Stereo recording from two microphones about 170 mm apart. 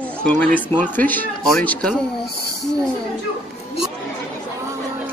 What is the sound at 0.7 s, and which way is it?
Speech, 10° left (ahead or behind).